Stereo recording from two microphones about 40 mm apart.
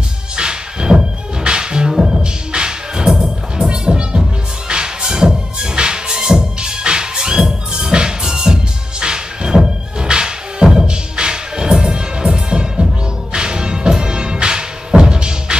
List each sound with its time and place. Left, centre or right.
0.4 s music: right